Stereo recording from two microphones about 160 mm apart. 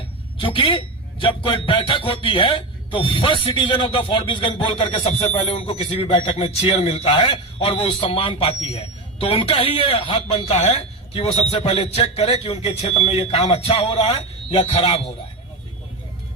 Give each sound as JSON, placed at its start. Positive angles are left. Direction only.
{"t": 0.3, "sound": "speech", "side_deg": 35}